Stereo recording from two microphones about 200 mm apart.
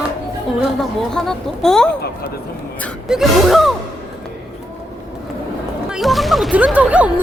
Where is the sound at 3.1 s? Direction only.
Centre (ahead or behind).